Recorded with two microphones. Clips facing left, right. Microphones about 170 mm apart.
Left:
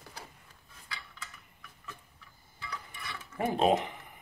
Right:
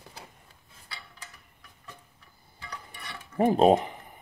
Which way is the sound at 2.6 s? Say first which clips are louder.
Even; 35° right (ahead or behind).